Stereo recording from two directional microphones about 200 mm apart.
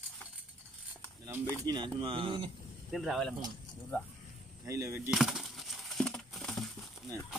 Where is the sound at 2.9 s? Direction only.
Centre (ahead or behind).